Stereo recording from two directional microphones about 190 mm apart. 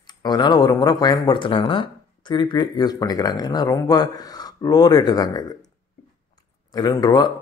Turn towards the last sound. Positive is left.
turn(degrees=20)  # may be behind; listen again after turning